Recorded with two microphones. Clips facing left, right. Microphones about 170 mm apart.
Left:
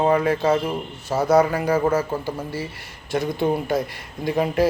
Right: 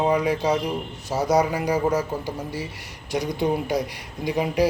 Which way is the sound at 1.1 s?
55° left (ahead or behind).